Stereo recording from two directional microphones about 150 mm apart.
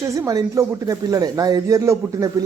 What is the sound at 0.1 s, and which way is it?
Speech, 20° right (ahead or behind).